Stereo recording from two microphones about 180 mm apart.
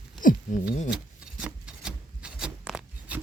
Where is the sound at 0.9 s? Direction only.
5° right (ahead or behind).